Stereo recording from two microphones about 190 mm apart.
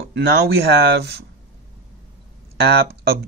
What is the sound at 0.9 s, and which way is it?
Speech, 60° right (ahead or behind).